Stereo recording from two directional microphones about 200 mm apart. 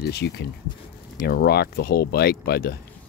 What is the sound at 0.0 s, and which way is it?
Speech, 55° left (ahead or behind).